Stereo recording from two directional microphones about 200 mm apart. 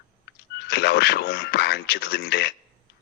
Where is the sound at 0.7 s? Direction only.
55° left (ahead or behind).